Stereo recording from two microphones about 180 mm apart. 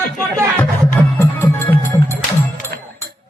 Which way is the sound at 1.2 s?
15° left (ahead or behind).